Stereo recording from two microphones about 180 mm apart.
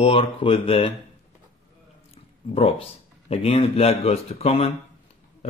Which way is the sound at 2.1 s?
35° left (ahead or behind).